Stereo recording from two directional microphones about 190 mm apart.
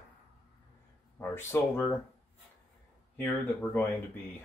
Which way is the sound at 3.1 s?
10° left (ahead or behind).